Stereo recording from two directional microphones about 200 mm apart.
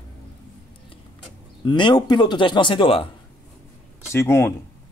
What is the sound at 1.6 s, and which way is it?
Speech, 20° left (ahead or behind).